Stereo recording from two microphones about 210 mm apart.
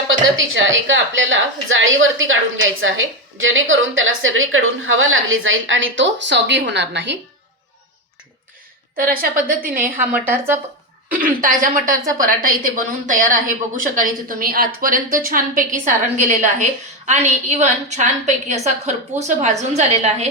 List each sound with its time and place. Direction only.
0.1 s a woman's voice: 65° right (ahead or behind)
9.0 s a woman's voice: 40° right (ahead or behind)
10.1 s speech: 10° right (ahead or behind)
11.1 s a woman's voice: 40° right (ahead or behind)